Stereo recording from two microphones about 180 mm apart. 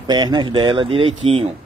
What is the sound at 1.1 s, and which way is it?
Speech, 90° right.